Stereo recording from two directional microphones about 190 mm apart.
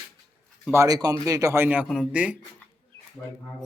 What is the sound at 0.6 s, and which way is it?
Speech, 15° right (ahead or behind).